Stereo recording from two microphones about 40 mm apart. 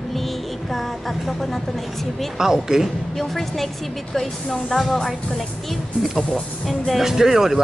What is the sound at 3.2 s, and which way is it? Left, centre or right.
Music, centre.